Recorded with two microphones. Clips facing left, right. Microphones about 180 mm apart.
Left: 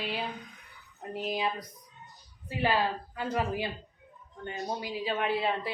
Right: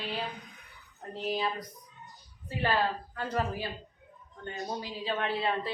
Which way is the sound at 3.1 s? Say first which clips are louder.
Left 1 dB; 10° left (ahead or behind).